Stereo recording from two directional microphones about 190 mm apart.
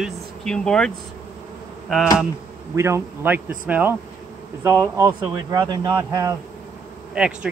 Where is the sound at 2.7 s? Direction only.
15° right (ahead or behind).